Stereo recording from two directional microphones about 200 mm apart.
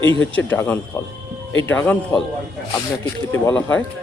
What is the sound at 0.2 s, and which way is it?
Speech, 70° left (ahead or behind).